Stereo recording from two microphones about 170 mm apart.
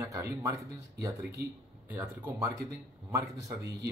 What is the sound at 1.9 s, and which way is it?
A man's voice, 10° right (ahead or behind).